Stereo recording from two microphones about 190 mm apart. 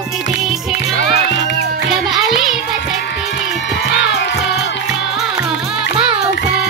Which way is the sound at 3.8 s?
65° left (ahead or behind).